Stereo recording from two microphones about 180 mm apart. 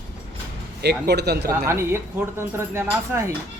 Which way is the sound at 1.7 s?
15° right (ahead or behind).